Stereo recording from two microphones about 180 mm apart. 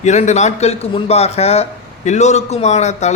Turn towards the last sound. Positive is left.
turn(degrees=40)  # may be behind; listen again after turning